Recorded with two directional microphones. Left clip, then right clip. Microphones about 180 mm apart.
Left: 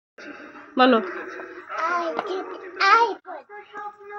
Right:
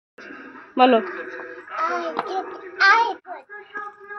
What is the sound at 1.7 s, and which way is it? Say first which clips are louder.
Music: even; 20° left (ahead or behind).